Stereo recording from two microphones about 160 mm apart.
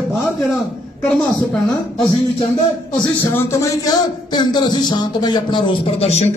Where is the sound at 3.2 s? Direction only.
15° left (ahead or behind); by 6.2 s 40° left (ahead or behind).